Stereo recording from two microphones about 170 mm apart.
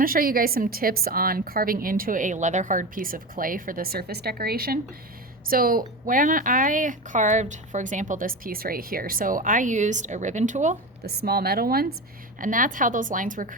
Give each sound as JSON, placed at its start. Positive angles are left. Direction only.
{"t": 0.0, "sound": "a woman's voice", "side_deg": -55}
{"t": 11.0, "sound": "a woman's voice", "side_deg": -65}
{"t": 12.4, "sound": "a woman's voice", "side_deg": -50}